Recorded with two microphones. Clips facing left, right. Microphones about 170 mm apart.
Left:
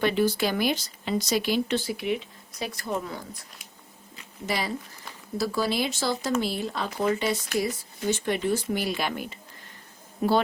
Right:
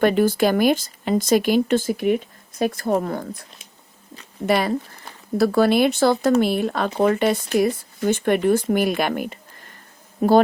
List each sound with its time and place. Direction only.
0.0 s speech: 50° right (ahead or behind)
4.4 s speech: 60° right (ahead or behind)
10.2 s speech: 45° right (ahead or behind)